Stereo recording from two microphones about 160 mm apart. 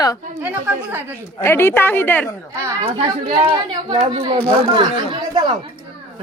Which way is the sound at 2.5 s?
20° right (ahead or behind).